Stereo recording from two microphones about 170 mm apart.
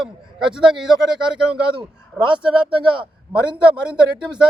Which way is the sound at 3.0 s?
30° right (ahead or behind).